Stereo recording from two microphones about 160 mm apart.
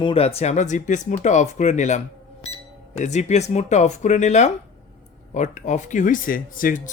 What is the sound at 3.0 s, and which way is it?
Speech, 45° left (ahead or behind).